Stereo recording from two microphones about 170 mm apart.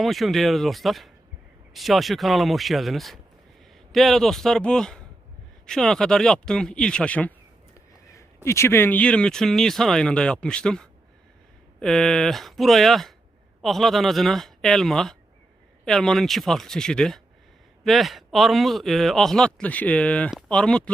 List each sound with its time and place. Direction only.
0.0 s speech: centre (ahead or behind)
8.4 s speech: 15° left (ahead or behind)